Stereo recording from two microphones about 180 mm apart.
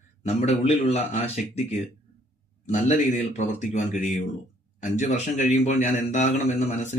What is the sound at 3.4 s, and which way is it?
A man's voice, 40° left (ahead or behind).